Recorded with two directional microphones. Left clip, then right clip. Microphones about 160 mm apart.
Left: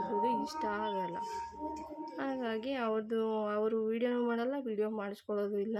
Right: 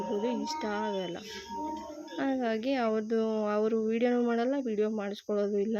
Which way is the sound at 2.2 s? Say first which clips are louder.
Right 6 dB; 20° right (ahead or behind).